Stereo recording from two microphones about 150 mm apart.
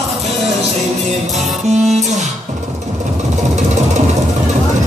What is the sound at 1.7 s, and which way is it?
Music, 50° right (ahead or behind).